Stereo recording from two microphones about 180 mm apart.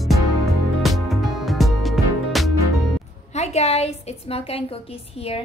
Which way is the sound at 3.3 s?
35° left (ahead or behind).